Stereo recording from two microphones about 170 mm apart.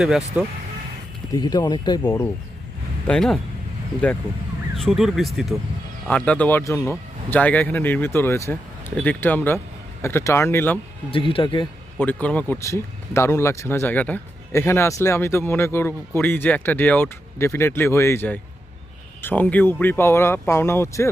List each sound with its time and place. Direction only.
0.4 s speech: 10° right (ahead or behind)
1.3 s speech: 25° left (ahead or behind)
3.1 s speech: 5° left (ahead or behind)
4.8 s speech: centre (ahead or behind)
11.1 s speech: 30° left (ahead or behind)
11.9 s speech: 10° left (ahead or behind)